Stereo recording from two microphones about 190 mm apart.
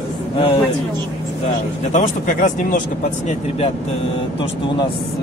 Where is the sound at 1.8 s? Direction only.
40° left (ahead or behind).